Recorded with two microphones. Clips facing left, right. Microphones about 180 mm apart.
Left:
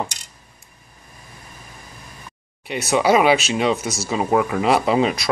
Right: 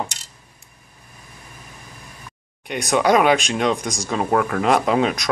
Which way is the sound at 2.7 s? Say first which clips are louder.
Even; 5° left (ahead or behind).